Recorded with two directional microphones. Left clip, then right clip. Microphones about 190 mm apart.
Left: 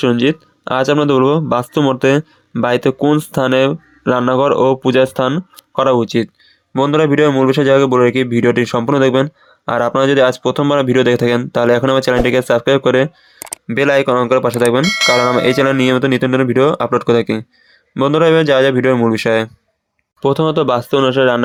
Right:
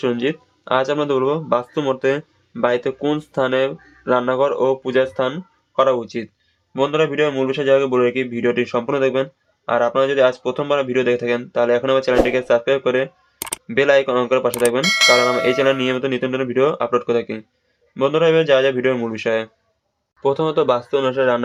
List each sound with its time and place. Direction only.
0.0 s speech: 40° left (ahead or behind)
13.7 s speech: 35° left (ahead or behind)
14.8 s speech: centre (ahead or behind)
15.4 s speech: 40° left (ahead or behind)